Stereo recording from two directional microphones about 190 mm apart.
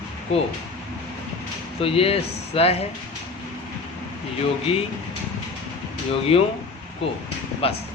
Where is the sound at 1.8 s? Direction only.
30° left (ahead or behind).